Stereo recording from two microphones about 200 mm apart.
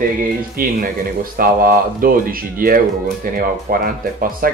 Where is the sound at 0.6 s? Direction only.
45° right (ahead or behind).